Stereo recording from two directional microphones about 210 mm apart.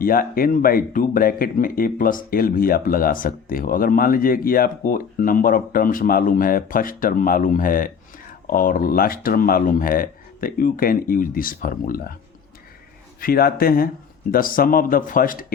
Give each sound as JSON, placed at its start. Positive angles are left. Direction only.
{"t": 0.0, "sound": "speech", "side_deg": 45}
{"t": 13.1, "sound": "speech", "side_deg": 45}